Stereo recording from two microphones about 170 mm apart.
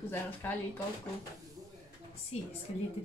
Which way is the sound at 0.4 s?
10° left (ahead or behind).